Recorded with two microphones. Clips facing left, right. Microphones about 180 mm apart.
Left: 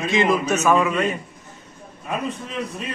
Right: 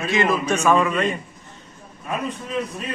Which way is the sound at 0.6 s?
5° left (ahead or behind).